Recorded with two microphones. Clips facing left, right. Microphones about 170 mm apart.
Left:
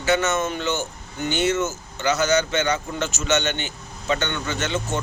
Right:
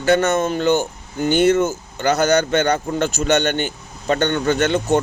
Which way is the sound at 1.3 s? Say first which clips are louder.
Right 7 dB; 55° right (ahead or behind).